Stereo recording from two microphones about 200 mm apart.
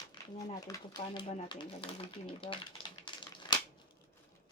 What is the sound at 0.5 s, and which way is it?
Speech, 20° left (ahead or behind).